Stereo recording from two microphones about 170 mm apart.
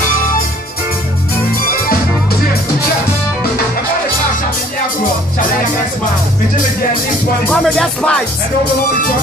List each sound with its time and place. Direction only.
7.4 s music: 5° left (ahead or behind)